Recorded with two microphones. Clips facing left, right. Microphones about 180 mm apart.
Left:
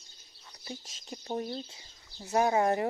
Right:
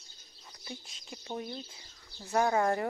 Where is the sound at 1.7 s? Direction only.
20° left (ahead or behind).